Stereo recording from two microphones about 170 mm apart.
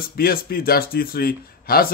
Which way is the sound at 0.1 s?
60° left (ahead or behind).